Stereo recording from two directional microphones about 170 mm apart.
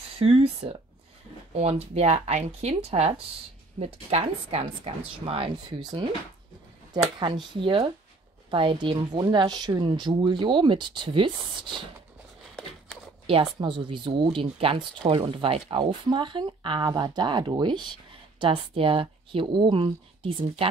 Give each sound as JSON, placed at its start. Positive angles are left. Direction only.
{"t": 0.2, "sound": "speech", "side_deg": -35}
{"t": 7.2, "sound": "speech", "side_deg": -25}
{"t": 12.6, "sound": "a sound", "side_deg": 5}
{"t": 13.3, "sound": "speech", "side_deg": -30}